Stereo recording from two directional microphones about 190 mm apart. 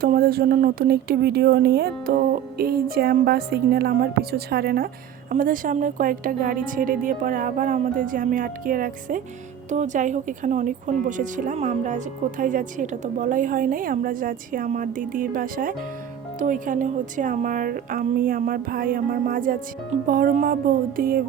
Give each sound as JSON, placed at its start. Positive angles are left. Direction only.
{"t": 0.0, "sound": "speech", "side_deg": -50}